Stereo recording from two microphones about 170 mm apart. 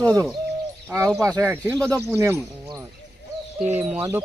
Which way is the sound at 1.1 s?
Centre (ahead or behind).